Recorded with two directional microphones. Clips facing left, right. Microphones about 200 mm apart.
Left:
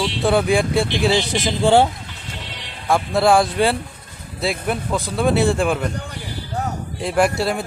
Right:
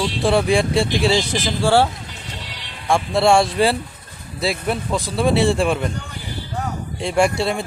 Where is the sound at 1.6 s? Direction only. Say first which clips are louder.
Left 2 dB; 20° left (ahead or behind).